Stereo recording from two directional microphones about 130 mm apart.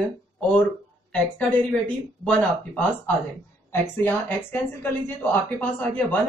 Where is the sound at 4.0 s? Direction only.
15° left (ahead or behind).